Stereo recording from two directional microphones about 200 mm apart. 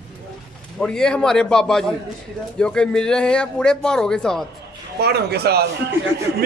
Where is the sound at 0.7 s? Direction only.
5° left (ahead or behind).